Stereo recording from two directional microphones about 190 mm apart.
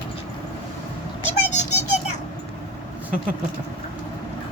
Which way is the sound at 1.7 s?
35° left (ahead or behind).